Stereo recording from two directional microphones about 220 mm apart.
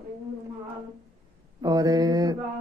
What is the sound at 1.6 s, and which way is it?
Speech, 15° right (ahead or behind).